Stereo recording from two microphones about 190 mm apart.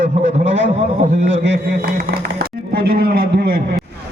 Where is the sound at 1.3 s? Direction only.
70° right (ahead or behind).